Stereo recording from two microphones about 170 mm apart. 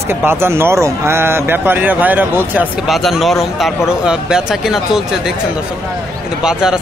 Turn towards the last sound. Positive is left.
turn(degrees=-5)  # may be behind; listen again after turning